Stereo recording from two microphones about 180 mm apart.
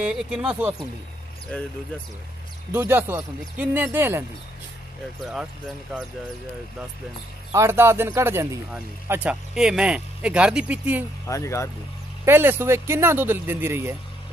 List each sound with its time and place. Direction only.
0.0 s speech: 5° right (ahead or behind)
2.7 s speech: 10° right (ahead or behind)
5.2 s speech: 5° right (ahead or behind)
7.5 s speech: 15° right (ahead or behind)
11.2 s speech: 15° left (ahead or behind)
12.3 s speech: 15° right (ahead or behind)